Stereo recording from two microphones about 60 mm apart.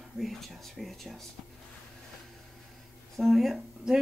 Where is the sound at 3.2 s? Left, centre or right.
Centre.